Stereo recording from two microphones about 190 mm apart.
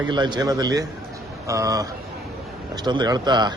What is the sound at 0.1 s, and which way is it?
Speech, 25° right (ahead or behind).